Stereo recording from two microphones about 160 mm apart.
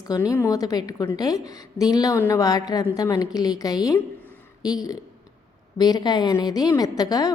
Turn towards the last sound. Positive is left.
turn(degrees=25)  # may be behind; listen again after turning